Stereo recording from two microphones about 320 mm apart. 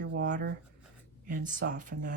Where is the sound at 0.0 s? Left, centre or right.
Right.